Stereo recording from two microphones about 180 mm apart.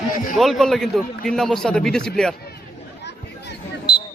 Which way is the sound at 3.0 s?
70° left (ahead or behind).